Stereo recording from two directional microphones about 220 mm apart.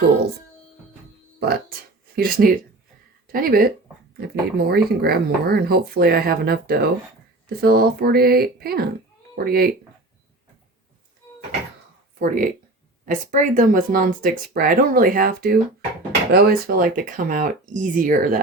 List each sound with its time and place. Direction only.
1.4 s music: 45° right (ahead or behind)
2.1 s speech: 40° right (ahead or behind)
12.2 s speech: 35° right (ahead or behind)